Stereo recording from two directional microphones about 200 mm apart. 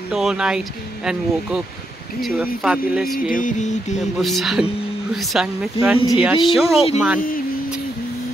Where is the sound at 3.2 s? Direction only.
40° left (ahead or behind).